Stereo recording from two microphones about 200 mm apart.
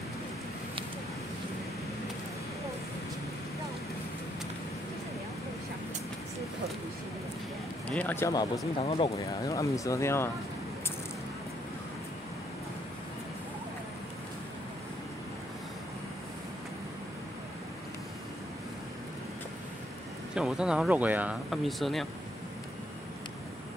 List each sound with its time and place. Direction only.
7.9 s speech: 10° left (ahead or behind)
8.8 s speech: 30° left (ahead or behind)
9.2 s speech: 15° left (ahead or behind)
20.3 s speech: 5° right (ahead or behind)